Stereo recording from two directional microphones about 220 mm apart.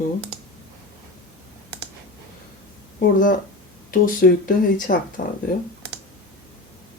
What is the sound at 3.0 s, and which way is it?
Speech, 40° left (ahead or behind).